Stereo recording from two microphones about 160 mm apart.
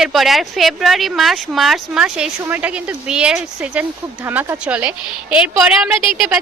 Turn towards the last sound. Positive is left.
turn(degrees=-5)  # may be behind; listen again after turning